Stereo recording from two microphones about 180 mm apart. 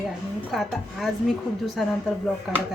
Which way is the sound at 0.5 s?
Centre (ahead or behind).